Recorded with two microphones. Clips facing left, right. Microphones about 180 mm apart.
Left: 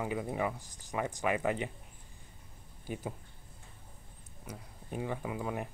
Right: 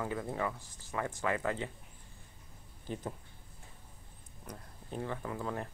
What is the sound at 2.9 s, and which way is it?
Speech, 10° left (ahead or behind).